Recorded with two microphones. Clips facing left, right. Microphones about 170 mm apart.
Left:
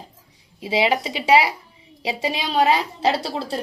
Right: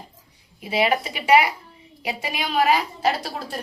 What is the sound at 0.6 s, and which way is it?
A man's voice, 25° left (ahead or behind).